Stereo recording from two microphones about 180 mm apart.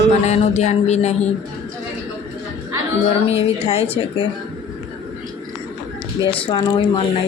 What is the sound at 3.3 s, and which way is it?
Speech, 35° left (ahead or behind).